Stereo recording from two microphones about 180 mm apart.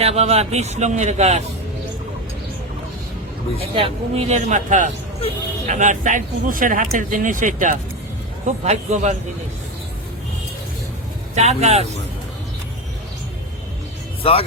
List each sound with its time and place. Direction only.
0.0 s speech: 35° right (ahead or behind)
3.8 s speech: 30° right (ahead or behind)
11.3 s speech: 40° right (ahead or behind)
14.2 s speech: 30° left (ahead or behind)